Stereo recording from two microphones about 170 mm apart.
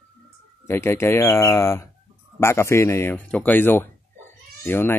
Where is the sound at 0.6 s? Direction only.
15° left (ahead or behind).